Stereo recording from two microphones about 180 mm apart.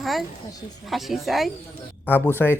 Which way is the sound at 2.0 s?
10° left (ahead or behind).